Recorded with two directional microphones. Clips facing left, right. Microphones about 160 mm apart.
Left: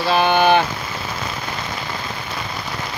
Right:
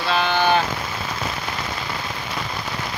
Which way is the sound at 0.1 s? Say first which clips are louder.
Left 5 dB; 15° left (ahead or behind).